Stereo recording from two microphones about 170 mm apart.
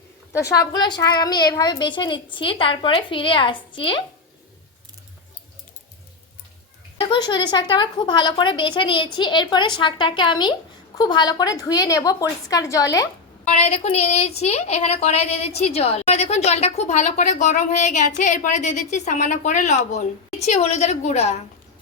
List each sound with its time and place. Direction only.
0.3 s a woman's voice: 20° left (ahead or behind)
7.1 s a woman's voice: 25° left (ahead or behind)
13.4 s a woman's voice: 40° left (ahead or behind)